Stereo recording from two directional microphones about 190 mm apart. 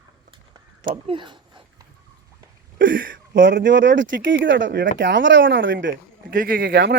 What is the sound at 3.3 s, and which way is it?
Speech, 70° right (ahead or behind).